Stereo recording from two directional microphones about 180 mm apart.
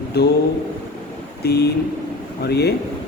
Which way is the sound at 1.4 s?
60° left (ahead or behind).